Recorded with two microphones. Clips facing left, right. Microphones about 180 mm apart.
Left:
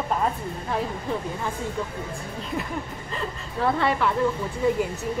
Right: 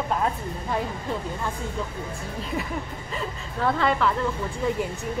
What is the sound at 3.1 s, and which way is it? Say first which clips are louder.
Speech: left 1 dB; centre (ahead or behind).